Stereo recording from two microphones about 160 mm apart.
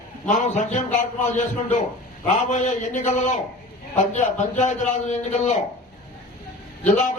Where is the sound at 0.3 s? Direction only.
50° left (ahead or behind).